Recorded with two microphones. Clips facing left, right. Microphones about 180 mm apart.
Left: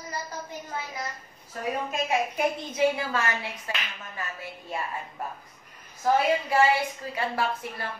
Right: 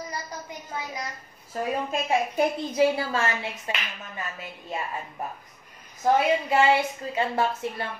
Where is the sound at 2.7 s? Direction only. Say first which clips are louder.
Right 2 dB; 30° right (ahead or behind).